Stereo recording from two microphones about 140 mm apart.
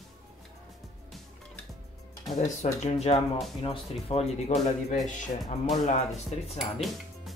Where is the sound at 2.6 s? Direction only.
50° left (ahead or behind).